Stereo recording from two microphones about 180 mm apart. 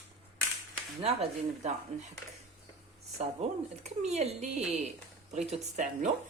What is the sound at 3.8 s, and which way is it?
A woman's voice, 35° right (ahead or behind).